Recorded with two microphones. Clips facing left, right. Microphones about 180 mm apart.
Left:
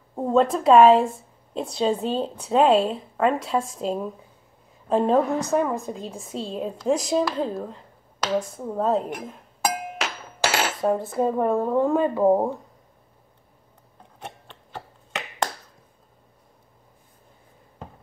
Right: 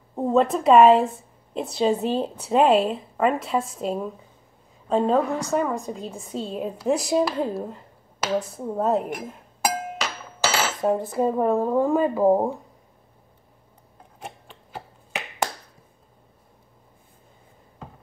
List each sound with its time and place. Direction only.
0.1 s a woman's voice: 5° right (ahead or behind)
10.8 s a woman's voice: centre (ahead or behind)
14.2 s finger snapping: 5° right (ahead or behind)